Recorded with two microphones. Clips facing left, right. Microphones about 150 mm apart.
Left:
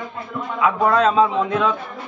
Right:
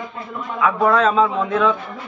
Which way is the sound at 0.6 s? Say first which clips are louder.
Right 1 dB; 20° left (ahead or behind).